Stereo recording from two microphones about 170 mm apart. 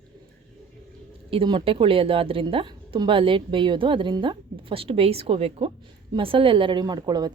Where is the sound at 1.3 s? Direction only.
30° right (ahead or behind).